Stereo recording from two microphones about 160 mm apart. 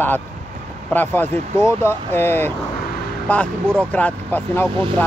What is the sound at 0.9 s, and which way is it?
Speech, 10° left (ahead or behind).